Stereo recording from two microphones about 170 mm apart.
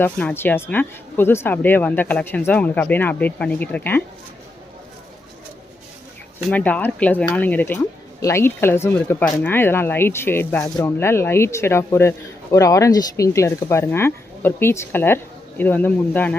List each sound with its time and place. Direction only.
0.0 s speech: 10° left (ahead or behind)
6.5 s speech: 10° left (ahead or behind)